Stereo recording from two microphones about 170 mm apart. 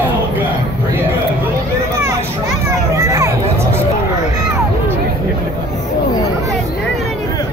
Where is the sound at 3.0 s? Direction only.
20° right (ahead or behind).